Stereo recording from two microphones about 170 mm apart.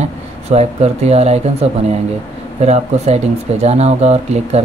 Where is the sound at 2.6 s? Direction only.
40° right (ahead or behind).